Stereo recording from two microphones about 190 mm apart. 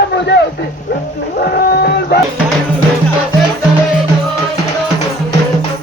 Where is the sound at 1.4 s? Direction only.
55° left (ahead or behind).